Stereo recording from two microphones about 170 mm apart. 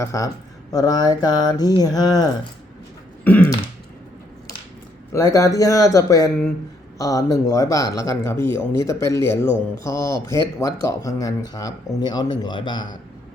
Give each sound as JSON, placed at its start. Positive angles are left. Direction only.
{"t": 0.0, "sound": "speech", "side_deg": 20}
{"t": 5.1, "sound": "speech", "side_deg": 20}